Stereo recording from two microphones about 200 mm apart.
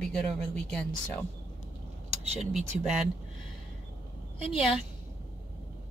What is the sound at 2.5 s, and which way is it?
Speech, 5° right (ahead or behind).